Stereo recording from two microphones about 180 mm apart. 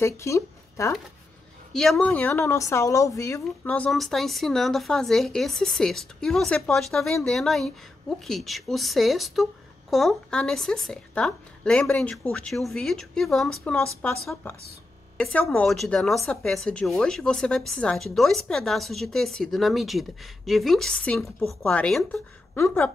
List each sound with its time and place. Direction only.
0.0 s speech: 15° left (ahead or behind)
1.7 s a woman's voice: centre (ahead or behind)